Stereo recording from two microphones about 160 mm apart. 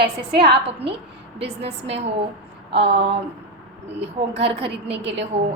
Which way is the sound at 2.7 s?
40° right (ahead or behind).